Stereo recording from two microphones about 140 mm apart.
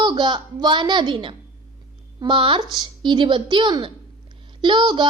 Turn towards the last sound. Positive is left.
turn(degrees=-35)  # may be behind; listen again after turning